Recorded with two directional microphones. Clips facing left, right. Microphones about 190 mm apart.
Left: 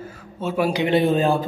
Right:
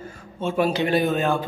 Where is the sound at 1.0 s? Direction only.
30° left (ahead or behind).